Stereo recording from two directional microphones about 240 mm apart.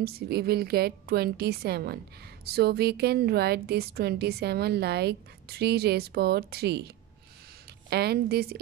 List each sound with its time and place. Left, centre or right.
0.0 s a woman's voice: right
7.9 s a woman's voice: right